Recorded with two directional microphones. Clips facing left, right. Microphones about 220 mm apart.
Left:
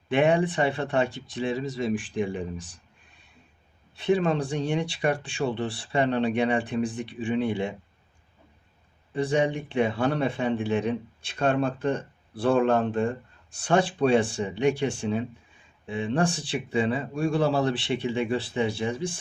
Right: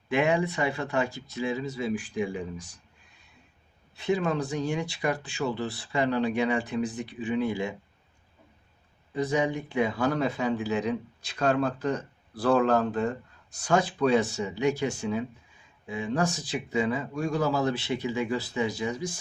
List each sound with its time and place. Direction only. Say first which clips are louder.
0.1 s speech: left 3 dB; 30° left (ahead or behind)
4.0 s speech: left 3 dB; 30° left (ahead or behind)
9.1 s speech: left 2 dB; 30° left (ahead or behind)